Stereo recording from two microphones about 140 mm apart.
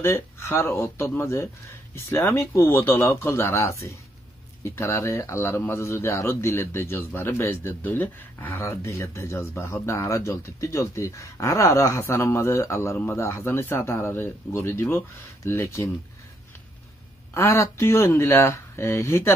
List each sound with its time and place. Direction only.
0.0 s speech: 20° left (ahead or behind)
17.3 s speech: 20° left (ahead or behind)